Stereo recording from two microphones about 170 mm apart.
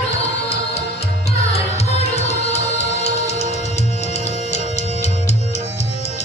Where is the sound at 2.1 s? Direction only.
40° left (ahead or behind).